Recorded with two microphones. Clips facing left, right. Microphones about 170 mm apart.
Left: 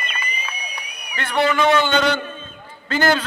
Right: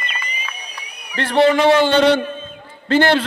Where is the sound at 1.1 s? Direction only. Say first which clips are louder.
Right 5 dB; 30° right (ahead or behind).